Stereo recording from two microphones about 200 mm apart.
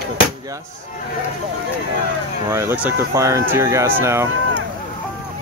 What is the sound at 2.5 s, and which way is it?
Speech, 10° right (ahead or behind).